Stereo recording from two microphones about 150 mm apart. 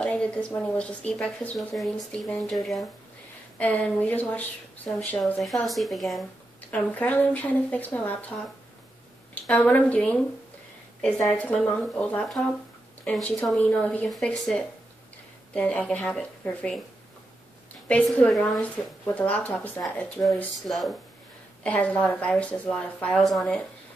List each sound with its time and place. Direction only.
0.0 s a sound: 10° left (ahead or behind)
0.5 s a woman's voice: 10° left (ahead or behind)
6.7 s a woman's voice: 10° left (ahead or behind)
11.2 s a woman's voice: 10° left (ahead or behind)
17.8 s a woman's voice: 10° left (ahead or behind)
20.5 s a woman's voice: centre (ahead or behind)